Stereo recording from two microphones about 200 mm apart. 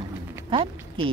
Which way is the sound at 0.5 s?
25° right (ahead or behind).